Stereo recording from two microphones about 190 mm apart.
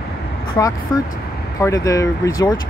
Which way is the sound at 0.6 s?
20° left (ahead or behind).